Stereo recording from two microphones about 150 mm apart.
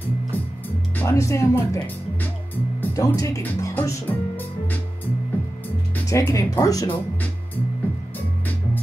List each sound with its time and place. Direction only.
0.9 s speech: 20° left (ahead or behind)
2.5 s music: 10° left (ahead or behind)
3.0 s speech: 20° left (ahead or behind)
5.9 s speech: 20° left (ahead or behind)